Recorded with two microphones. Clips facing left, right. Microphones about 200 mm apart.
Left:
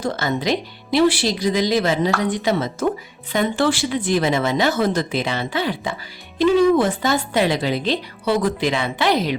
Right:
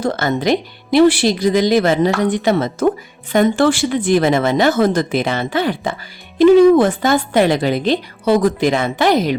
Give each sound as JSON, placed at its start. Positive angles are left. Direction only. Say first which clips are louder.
{"t": 0.0, "sound": "speech", "louder": "right 5 dB", "side_deg": -55}